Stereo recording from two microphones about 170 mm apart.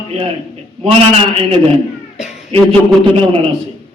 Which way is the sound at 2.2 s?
40° left (ahead or behind).